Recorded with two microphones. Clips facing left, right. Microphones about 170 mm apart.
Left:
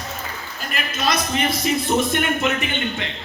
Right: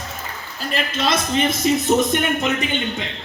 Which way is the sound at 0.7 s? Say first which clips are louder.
Right 2 dB; 25° right (ahead or behind).